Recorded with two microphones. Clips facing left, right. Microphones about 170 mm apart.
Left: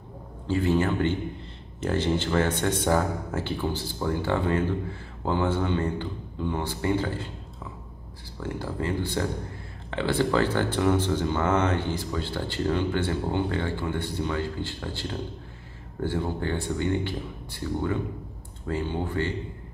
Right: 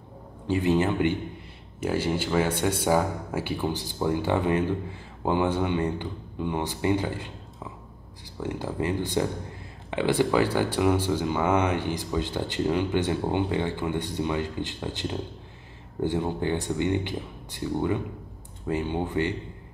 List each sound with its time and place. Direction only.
0.5 s speech: 15° right (ahead or behind)
8.4 s speech: 15° right (ahead or behind)